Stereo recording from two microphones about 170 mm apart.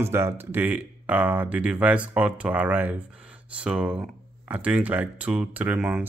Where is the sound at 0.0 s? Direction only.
15° right (ahead or behind).